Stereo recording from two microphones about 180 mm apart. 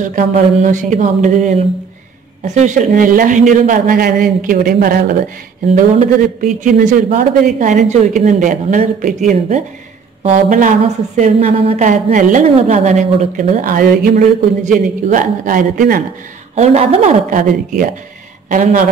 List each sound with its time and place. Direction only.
0.0 s a woman's voice: 45° right (ahead or behind)
5.8 s a woman's voice: 45° right (ahead or behind)
10.3 s a woman's voice: 45° right (ahead or behind)
16.5 s a woman's voice: 40° right (ahead or behind)